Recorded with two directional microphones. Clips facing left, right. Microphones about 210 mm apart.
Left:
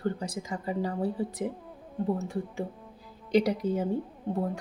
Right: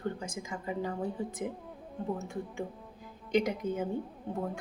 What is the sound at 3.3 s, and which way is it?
Speech, 35° left (ahead or behind).